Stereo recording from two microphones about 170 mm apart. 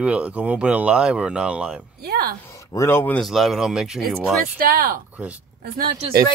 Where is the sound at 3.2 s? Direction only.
Centre (ahead or behind).